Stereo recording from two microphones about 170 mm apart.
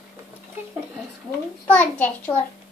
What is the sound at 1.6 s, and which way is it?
Speech, 10° left (ahead or behind).